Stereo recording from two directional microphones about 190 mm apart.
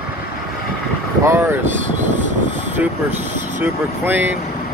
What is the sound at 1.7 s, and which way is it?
Speech, 40° right (ahead or behind).